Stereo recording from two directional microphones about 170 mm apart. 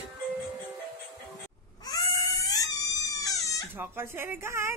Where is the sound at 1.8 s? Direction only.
20° left (ahead or behind).